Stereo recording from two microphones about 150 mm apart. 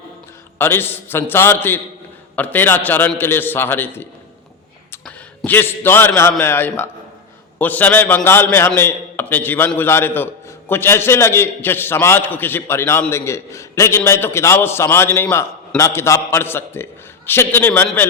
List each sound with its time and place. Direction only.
0.6 s a man's voice: 15° left (ahead or behind)
5.5 s a man's voice: 15° left (ahead or behind)